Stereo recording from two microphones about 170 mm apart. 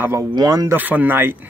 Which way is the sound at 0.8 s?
10° right (ahead or behind).